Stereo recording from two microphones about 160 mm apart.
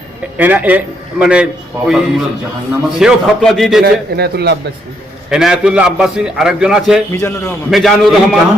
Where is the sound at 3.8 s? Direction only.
90° right.